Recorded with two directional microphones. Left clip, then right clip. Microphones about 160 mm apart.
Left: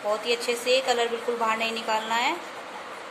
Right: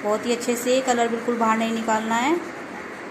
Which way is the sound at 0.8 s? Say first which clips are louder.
Right 3 dB; centre (ahead or behind).